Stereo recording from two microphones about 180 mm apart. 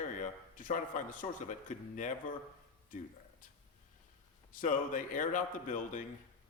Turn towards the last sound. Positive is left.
turn(degrees=45)  # may be behind; listen again after turning